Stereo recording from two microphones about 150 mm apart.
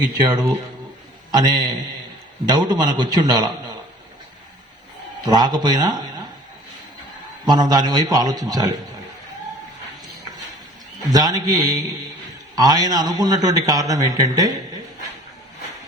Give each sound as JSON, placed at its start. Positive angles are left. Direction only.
{"t": 0.0, "sound": "a man's voice", "side_deg": -25}
{"t": 5.2, "sound": "a man's voice", "side_deg": -30}
{"t": 7.4, "sound": "a man's voice", "side_deg": -25}
{"t": 11.1, "sound": "a man's voice", "side_deg": -25}